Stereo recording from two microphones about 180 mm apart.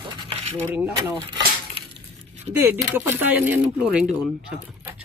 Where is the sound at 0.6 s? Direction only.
10° right (ahead or behind).